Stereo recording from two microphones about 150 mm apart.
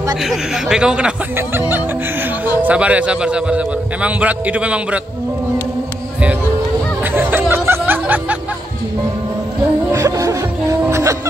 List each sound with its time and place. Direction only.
0.2 s a man's voice: 5° right (ahead or behind)
7.0 s music: 15° right (ahead or behind)
9.9 s music: 20° right (ahead or behind)